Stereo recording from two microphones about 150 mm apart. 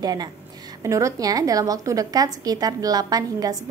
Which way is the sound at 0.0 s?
25° right (ahead or behind).